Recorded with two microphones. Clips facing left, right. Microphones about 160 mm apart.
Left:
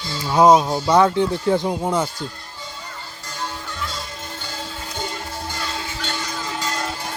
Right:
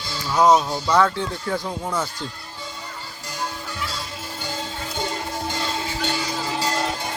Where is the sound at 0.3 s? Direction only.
25° left (ahead or behind).